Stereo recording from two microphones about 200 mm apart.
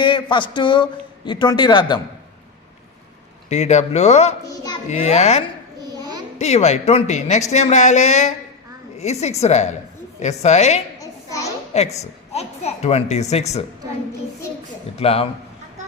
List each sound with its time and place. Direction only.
0.0 s a man's voice: 25° left (ahead or behind)
3.5 s a woman's voice: 35° left (ahead or behind)
6.0 s a sound: 20° right (ahead or behind)
6.4 s a woman's voice: 35° left (ahead or behind)
11.0 s a sound: 15° left (ahead or behind)
11.7 s a woman's voice: 35° left (ahead or behind)
14.9 s a man's voice: 30° left (ahead or behind)